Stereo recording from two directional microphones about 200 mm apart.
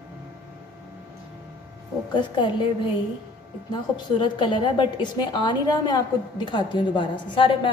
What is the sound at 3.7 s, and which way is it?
A woman's voice, 25° left (ahead or behind).